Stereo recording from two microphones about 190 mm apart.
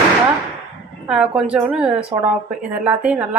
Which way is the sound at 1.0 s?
5° right (ahead or behind).